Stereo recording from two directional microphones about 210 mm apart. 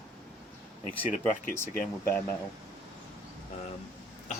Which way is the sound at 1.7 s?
45° left (ahead or behind).